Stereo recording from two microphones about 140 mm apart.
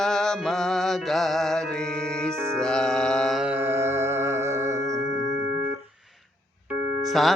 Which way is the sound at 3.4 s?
15° right (ahead or behind).